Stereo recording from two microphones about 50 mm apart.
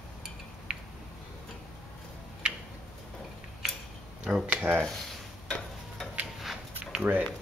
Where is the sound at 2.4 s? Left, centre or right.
Centre.